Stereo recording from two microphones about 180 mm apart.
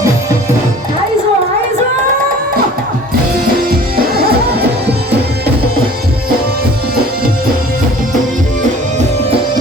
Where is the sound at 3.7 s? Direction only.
60° right (ahead or behind).